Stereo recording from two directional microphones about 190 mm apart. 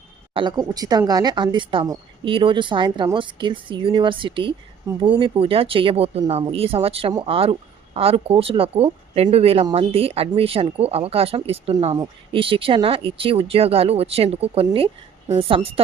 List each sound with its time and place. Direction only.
0.3 s speech: 20° right (ahead or behind)